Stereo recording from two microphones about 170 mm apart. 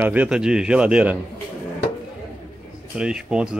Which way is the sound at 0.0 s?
10° right (ahead or behind).